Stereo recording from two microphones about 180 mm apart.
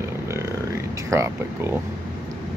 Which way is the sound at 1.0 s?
15° right (ahead or behind).